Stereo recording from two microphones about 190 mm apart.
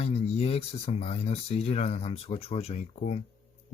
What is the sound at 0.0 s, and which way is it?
Speech, 35° left (ahead or behind).